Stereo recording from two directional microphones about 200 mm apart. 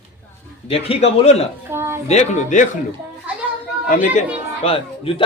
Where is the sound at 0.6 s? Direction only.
30° left (ahead or behind).